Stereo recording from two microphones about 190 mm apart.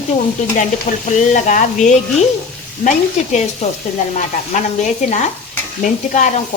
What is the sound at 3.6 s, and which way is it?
A woman's voice, 35° left (ahead or behind).